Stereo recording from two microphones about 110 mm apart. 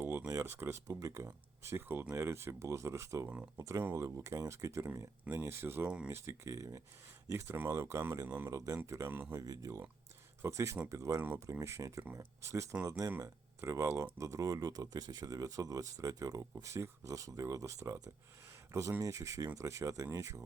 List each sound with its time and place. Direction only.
0.0 s speech: 20° right (ahead or behind)
3.2 s speech: 15° right (ahead or behind)
3.6 s speech: 30° right (ahead or behind)
11.2 s speech: 20° right (ahead or behind)